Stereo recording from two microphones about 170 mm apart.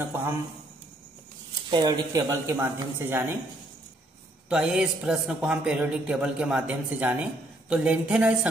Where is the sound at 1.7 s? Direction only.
25° right (ahead or behind).